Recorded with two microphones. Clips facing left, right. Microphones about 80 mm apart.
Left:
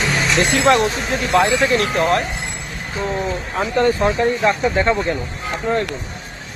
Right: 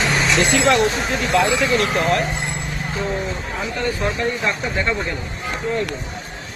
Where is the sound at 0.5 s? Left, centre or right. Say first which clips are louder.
Left 3 dB; left.